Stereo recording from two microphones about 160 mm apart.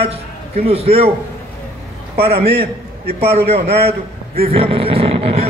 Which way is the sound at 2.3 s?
70° right (ahead or behind).